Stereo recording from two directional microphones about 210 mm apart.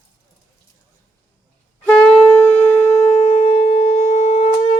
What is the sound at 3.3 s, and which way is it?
Wind instrument, 25° left (ahead or behind).